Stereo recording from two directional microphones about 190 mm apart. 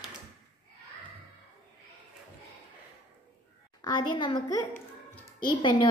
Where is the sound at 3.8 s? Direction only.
25° left (ahead or behind).